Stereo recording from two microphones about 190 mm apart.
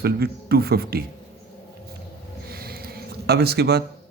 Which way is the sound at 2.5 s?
55° right (ahead or behind).